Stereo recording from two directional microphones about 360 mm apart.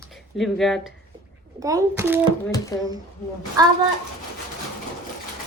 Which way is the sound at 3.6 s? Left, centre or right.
Centre.